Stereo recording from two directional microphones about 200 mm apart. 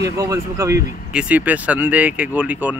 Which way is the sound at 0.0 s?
15° right (ahead or behind).